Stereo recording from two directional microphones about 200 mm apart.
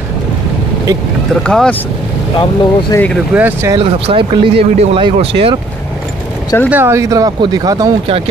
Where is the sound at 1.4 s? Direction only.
5° left (ahead or behind).